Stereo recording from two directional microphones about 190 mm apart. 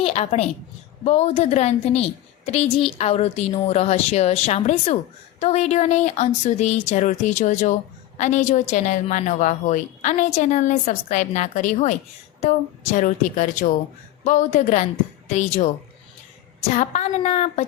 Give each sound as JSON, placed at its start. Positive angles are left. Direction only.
{"t": 0.0, "sound": "a woman's voice", "side_deg": 35}